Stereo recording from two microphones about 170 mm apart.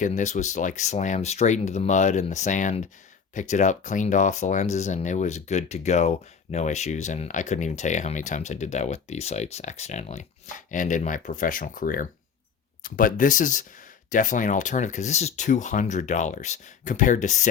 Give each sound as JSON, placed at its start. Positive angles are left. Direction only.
{"t": 0.0, "sound": "speech", "side_deg": 45}